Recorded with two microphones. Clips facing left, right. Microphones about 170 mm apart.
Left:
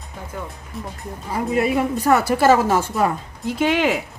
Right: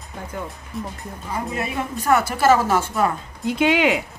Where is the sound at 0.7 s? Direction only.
Centre (ahead or behind).